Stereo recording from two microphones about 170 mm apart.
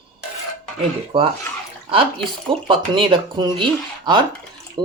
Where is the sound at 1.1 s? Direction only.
30° right (ahead or behind).